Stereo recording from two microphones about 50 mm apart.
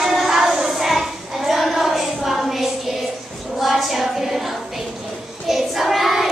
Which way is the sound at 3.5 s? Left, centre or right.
Centre.